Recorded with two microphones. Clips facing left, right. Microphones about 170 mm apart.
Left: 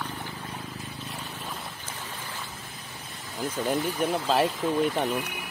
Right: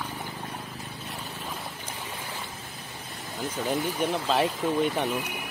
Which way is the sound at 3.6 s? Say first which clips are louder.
Even; 5° left (ahead or behind).